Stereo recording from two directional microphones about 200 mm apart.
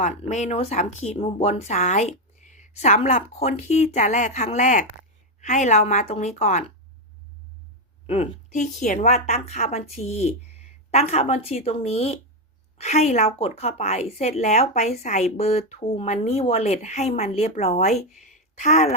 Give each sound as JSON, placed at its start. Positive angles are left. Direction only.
{"t": 0.0, "sound": "a woman's voice", "side_deg": 35}
{"t": 8.0, "sound": "a woman's voice", "side_deg": 30}